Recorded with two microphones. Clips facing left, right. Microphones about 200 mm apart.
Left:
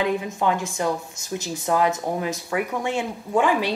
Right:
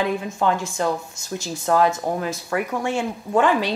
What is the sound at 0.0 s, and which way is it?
Speech, 15° left (ahead or behind).